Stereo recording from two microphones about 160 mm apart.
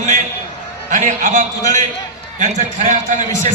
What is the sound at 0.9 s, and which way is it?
A man's voice, 50° right (ahead or behind).